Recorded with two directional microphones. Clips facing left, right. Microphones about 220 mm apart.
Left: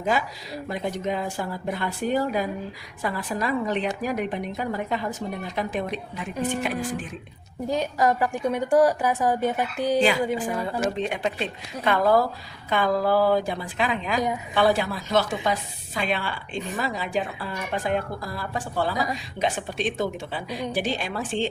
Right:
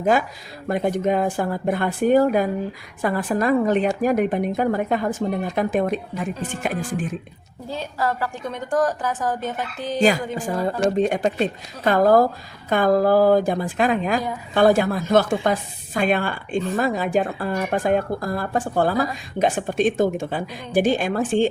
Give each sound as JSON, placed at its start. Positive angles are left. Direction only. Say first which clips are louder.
{"t": 0.0, "sound": "a woman's voice", "louder": "right 6 dB", "side_deg": -50}
{"t": 7.7, "sound": "a woman's voice", "louder": "left 3 dB", "side_deg": 15}
{"t": 10.3, "sound": "a woman's voice", "louder": "right 3 dB", "side_deg": -40}